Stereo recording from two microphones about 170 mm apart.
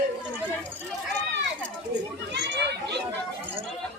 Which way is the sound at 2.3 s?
90° right.